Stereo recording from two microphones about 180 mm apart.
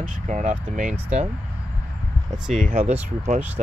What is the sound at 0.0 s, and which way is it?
Speech, 45° right (ahead or behind).